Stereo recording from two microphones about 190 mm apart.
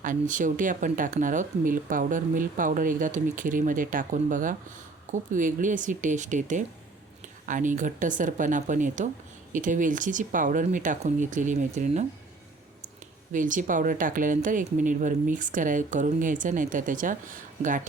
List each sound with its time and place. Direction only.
0.0 s speech: 40° right (ahead or behind)
13.3 s speech: 40° right (ahead or behind)